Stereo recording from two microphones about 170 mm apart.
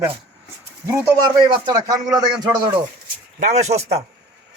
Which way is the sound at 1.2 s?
25° right (ahead or behind).